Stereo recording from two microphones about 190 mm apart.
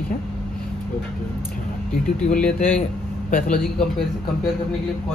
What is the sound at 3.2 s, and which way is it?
Speech, 45° left (ahead or behind).